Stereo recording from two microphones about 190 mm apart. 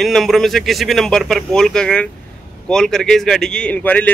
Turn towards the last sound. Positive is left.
turn(degrees=10)  # may be behind; listen again after turning